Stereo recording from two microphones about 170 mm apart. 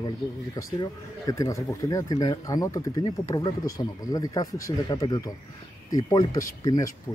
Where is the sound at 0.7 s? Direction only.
20° left (ahead or behind).